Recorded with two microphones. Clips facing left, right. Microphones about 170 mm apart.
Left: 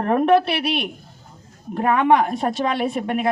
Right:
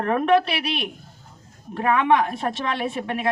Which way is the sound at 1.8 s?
35° left (ahead or behind).